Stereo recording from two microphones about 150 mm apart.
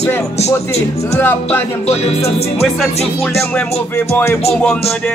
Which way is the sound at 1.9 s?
45° left (ahead or behind).